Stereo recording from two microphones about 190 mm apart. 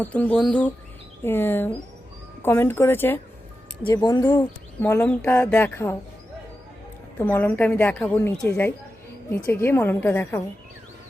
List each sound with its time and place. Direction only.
0.0 s a woman's voice: 10° left (ahead or behind)
3.8 s speech: 20° left (ahead or behind)
4.8 s a woman's voice: 10° left (ahead or behind)
7.2 s a woman's voice: 10° left (ahead or behind)